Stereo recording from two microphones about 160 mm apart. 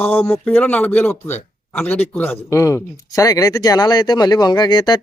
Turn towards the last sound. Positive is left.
turn(degrees=25)  # may be behind; listen again after turning